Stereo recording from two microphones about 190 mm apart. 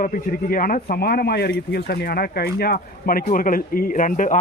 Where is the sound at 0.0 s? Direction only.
45° left (ahead or behind).